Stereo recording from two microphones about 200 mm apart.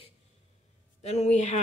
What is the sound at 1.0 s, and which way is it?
Speech, 35° left (ahead or behind).